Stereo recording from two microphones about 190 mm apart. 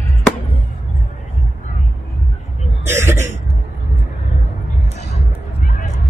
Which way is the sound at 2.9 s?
15° right (ahead or behind).